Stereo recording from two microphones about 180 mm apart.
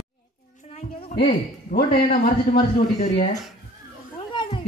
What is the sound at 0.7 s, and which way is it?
Music, 30° left (ahead or behind).